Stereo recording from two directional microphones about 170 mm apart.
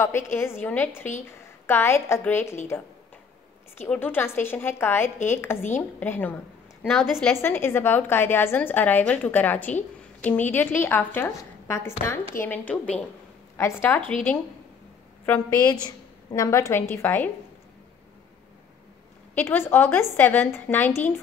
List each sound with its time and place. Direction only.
0.0 s a woman's voice: 15° left (ahead or behind)
6.9 s a woman's voice: centre (ahead or behind)
7.4 s a woman's voice: 15° left (ahead or behind)
16.3 s a woman's voice: 20° left (ahead or behind)
19.3 s a woman's voice: 15° left (ahead or behind)